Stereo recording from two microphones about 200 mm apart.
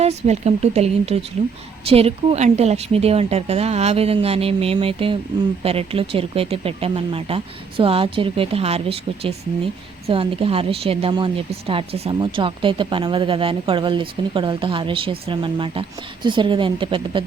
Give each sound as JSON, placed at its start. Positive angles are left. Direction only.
{"t": 0.0, "sound": "a woman's voice", "side_deg": -35}